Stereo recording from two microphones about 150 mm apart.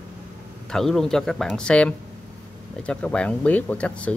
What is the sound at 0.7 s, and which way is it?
Speech, 5° left (ahead or behind).